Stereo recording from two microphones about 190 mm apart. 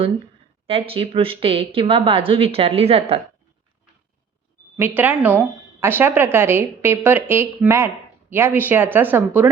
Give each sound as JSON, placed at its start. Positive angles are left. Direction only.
{"t": 0.7, "sound": "speech", "side_deg": -30}
{"t": 4.8, "sound": "a woman's voice", "side_deg": -10}